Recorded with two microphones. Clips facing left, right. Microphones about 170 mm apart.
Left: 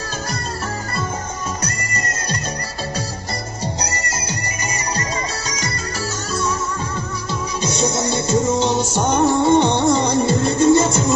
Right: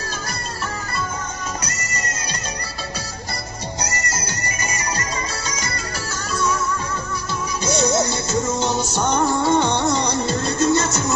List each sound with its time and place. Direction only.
8.0 s music: 20° left (ahead or behind)